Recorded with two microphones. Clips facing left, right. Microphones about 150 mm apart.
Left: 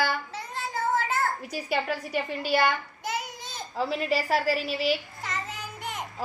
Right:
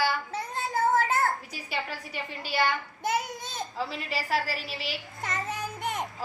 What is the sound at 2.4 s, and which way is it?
Speech, 45° left (ahead or behind).